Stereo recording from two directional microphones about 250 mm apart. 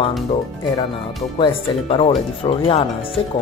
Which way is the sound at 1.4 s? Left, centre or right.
Left.